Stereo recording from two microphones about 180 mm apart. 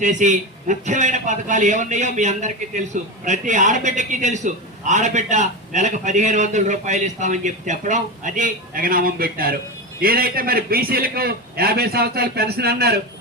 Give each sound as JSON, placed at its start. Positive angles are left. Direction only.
{"t": 0.0, "sound": "a man's voice", "side_deg": -45}